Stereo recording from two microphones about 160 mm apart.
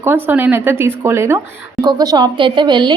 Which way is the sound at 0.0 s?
15° right (ahead or behind).